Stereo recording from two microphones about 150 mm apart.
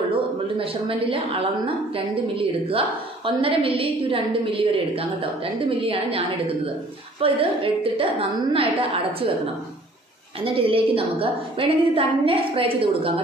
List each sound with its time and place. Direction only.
0.1 s a woman's voice: 40° right (ahead or behind)
10.4 s a woman's voice: 35° right (ahead or behind)